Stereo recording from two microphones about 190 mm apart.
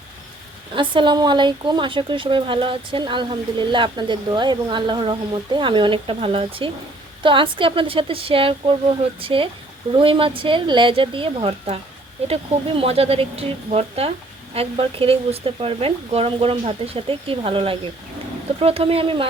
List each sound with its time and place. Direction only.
0.7 s a woman's voice: 25° right (ahead or behind)